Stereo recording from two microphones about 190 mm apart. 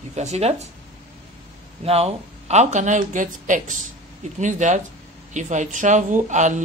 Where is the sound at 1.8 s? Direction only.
30° right (ahead or behind).